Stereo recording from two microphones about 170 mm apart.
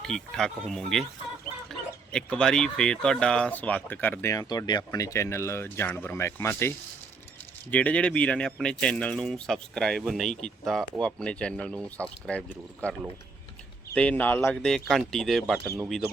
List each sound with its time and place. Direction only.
0.1 s speech: 5° left (ahead or behind)
2.1 s speech: 5° left (ahead or behind)
15.6 s speech: 15° right (ahead or behind)